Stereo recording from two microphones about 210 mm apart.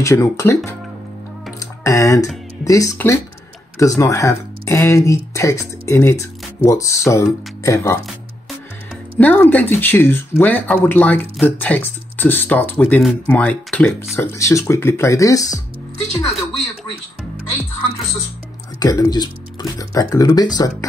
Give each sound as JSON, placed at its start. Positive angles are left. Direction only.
{"t": 0.0, "sound": "speech", "side_deg": 15}
{"t": 1.6, "sound": "music", "side_deg": 15}
{"t": 2.6, "sound": "speech", "side_deg": 15}
{"t": 9.2, "sound": "speech", "side_deg": 5}
{"t": 18.8, "sound": "speech", "side_deg": 15}